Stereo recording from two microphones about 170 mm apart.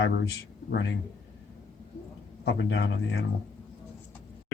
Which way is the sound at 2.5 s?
75° left (ahead or behind).